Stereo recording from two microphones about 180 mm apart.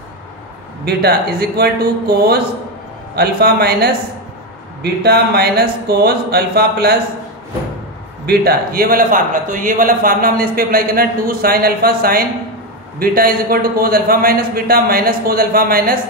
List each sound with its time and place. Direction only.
0.8 s a man's voice: 60° right (ahead or behind)
5.0 s a man's voice: 65° right (ahead or behind)
8.3 s a man's voice: 60° right (ahead or behind)